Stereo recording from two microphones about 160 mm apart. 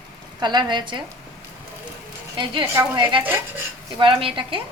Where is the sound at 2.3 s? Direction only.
30° right (ahead or behind).